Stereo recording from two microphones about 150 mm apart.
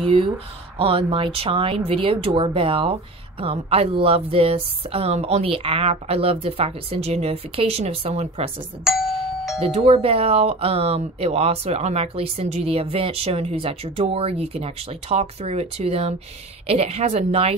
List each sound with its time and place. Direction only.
0.0 s speech: 35° right (ahead or behind)
8.8 s doorbell: centre (ahead or behind)
9.7 s speech: 45° right (ahead or behind)